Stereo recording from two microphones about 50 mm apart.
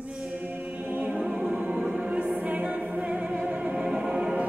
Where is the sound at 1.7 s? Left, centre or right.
Centre.